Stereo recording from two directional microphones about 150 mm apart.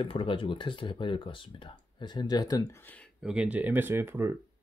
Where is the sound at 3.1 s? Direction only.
5° right (ahead or behind).